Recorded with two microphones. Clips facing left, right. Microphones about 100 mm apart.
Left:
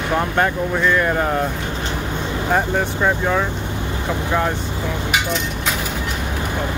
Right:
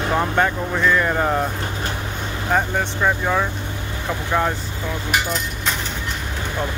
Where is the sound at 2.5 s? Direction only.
Centre (ahead or behind).